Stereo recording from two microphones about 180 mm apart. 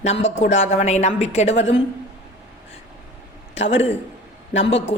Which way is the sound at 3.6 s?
35° left (ahead or behind).